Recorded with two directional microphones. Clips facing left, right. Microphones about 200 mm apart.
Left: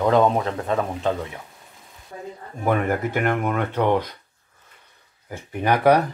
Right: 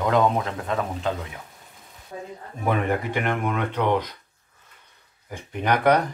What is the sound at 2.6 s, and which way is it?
Speech, 5° left (ahead or behind).